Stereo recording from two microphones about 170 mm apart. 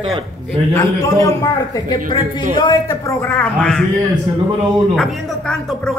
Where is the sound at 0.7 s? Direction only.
15° left (ahead or behind).